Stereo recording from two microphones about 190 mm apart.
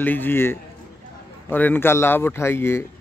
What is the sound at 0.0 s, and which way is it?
Speech, 10° left (ahead or behind).